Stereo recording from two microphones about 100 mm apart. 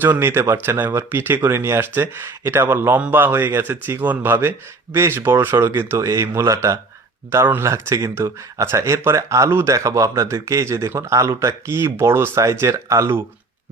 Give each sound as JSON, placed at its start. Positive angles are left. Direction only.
{"t": 0.0, "sound": "speech", "side_deg": -20}